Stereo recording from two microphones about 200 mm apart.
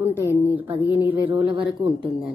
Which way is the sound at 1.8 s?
25° right (ahead or behind).